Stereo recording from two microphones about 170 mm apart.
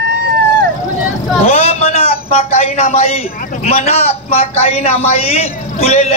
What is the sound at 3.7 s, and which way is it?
A man's voice, 35° left (ahead or behind).